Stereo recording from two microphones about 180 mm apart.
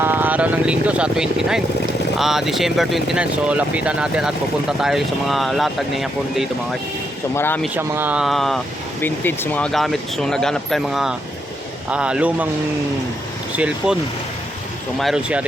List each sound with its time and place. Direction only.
0.0 s speech: 10° right (ahead or behind)
7.3 s speech: 10° left (ahead or behind)
7.8 s a man's voice: 10° right (ahead or behind)
13.6 s a man's voice: 5° right (ahead or behind)
14.9 s speech: centre (ahead or behind)